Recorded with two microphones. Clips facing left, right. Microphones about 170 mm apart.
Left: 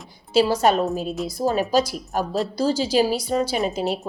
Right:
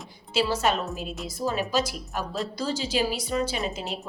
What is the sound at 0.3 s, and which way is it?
Speech, 40° left (ahead or behind).